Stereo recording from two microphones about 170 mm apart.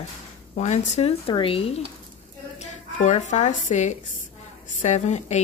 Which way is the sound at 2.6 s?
45° left (ahead or behind).